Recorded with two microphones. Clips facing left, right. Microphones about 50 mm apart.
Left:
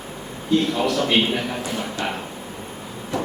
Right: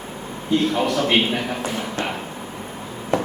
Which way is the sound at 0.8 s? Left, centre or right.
Centre.